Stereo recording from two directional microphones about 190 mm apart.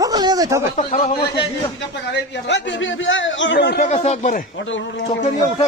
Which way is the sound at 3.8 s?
35° left (ahead or behind).